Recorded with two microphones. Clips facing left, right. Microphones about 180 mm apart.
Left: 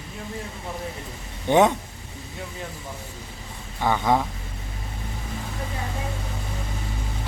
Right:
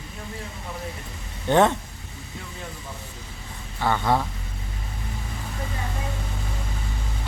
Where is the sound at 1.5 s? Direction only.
15° left (ahead or behind).